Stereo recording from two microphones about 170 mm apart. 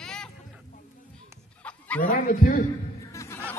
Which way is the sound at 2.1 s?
55° left (ahead or behind).